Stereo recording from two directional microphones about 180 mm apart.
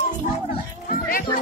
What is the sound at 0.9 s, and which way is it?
Music, 55° left (ahead or behind).